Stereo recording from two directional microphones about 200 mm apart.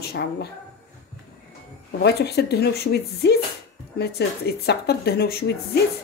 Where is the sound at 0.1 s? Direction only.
55° left (ahead or behind).